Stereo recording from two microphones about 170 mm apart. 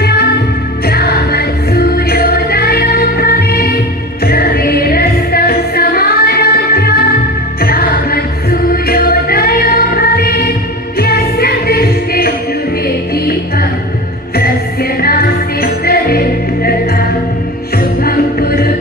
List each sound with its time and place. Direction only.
0.0 s music: 70° left (ahead or behind)
14.3 s music: 65° left (ahead or behind)
18.0 s music: 60° left (ahead or behind)